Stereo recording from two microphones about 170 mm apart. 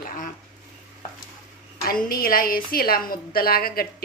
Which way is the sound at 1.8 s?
60° left (ahead or behind).